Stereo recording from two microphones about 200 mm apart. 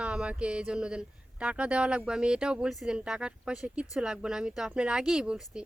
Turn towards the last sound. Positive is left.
turn(degrees=-5)  # may be behind; listen again after turning